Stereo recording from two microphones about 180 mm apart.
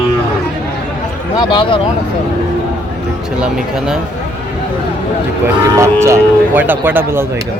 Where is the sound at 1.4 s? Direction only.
30° left (ahead or behind).